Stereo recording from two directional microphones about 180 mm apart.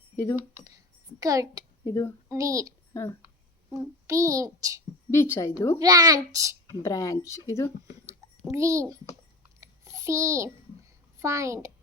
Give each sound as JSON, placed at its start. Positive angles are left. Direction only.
{"t": 0.3, "sound": "a child's voice", "side_deg": -15}
{"t": 1.8, "sound": "speech", "side_deg": 15}
{"t": 2.3, "sound": "a child's voice", "side_deg": -15}
{"t": 2.9, "sound": "speech", "side_deg": 15}
{"t": 4.0, "sound": "a child's voice", "side_deg": -15}
{"t": 5.1, "sound": "speech", "side_deg": 15}
{"t": 5.8, "sound": "a child's voice", "side_deg": -20}
{"t": 6.7, "sound": "speech", "side_deg": 20}
{"t": 8.5, "sound": "a child's voice", "side_deg": -15}
{"t": 9.6, "sound": "a sound", "side_deg": -15}
{"t": 11.2, "sound": "a child's voice", "side_deg": -15}